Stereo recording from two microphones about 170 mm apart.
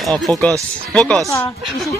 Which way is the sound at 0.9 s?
5° left (ahead or behind).